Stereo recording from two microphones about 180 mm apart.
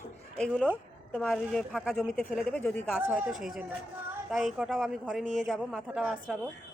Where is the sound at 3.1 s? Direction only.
Centre (ahead or behind).